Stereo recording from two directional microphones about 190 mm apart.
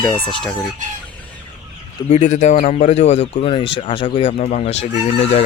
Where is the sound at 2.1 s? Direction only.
40° left (ahead or behind).